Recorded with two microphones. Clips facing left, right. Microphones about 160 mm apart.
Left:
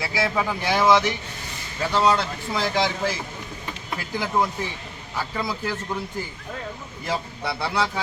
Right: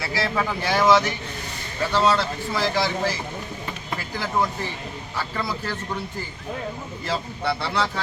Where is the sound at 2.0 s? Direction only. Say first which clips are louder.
Even; 20° left (ahead or behind).